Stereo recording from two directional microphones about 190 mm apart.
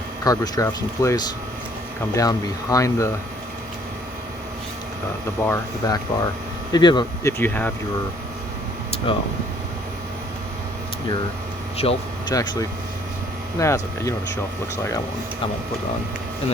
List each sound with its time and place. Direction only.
0.3 s speech: 20° left (ahead or behind)
5.4 s speech: 15° left (ahead or behind)
11.8 s speech: 30° left (ahead or behind)
12.3 s speech: 20° left (ahead or behind)